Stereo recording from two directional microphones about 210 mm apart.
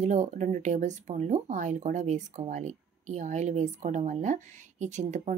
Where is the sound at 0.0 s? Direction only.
35° right (ahead or behind).